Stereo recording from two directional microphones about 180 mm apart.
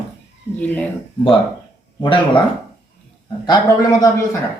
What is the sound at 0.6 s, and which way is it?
Speech, 10° left (ahead or behind).